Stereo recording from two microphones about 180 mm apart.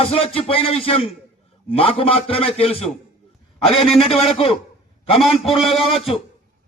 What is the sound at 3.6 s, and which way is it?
Speech, centre (ahead or behind).